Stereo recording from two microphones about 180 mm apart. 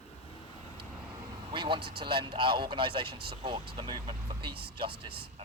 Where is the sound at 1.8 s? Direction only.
60° right (ahead or behind).